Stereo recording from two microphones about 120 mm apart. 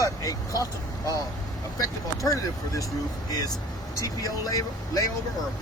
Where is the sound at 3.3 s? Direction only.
30° left (ahead or behind).